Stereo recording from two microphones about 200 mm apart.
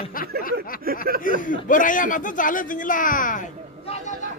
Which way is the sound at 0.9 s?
45° right (ahead or behind).